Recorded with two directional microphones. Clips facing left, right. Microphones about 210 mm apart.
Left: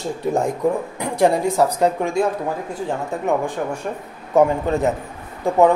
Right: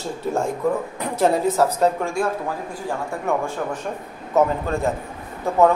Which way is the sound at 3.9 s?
Centre (ahead or behind).